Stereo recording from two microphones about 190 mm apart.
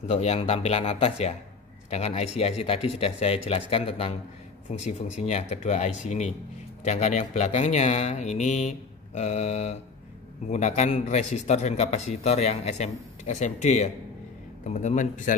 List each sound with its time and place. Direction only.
0.1 s a man's voice: 35° left (ahead or behind)